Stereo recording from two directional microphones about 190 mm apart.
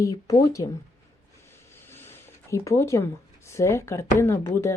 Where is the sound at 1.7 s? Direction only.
10° left (ahead or behind).